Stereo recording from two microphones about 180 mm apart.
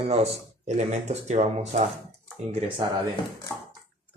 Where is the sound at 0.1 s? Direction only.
35° right (ahead or behind).